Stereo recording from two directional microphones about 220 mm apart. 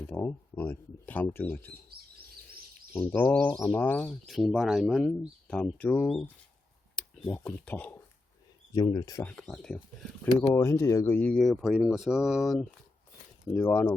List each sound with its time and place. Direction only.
0.0 s speech: 10° left (ahead or behind)
3.1 s speech: 5° left (ahead or behind)
8.7 s speech: 20° left (ahead or behind)
9.2 s speech: 5° left (ahead or behind)
13.4 s speech: 10° left (ahead or behind)